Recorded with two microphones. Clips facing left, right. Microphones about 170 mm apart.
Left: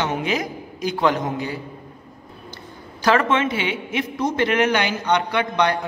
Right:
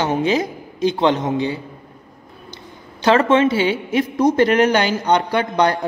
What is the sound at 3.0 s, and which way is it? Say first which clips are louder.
A man's voice: right 5 dB; 30° right (ahead or behind).